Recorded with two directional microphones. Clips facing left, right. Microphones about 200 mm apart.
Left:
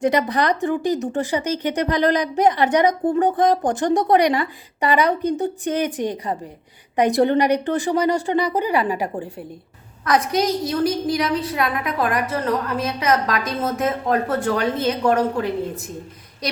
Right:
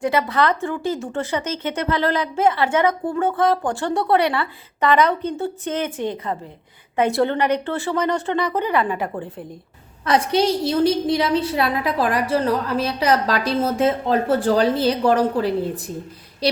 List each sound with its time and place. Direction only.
0.0 s a woman's voice: 20° left (ahead or behind)
10.1 s a woman's voice: 30° right (ahead or behind)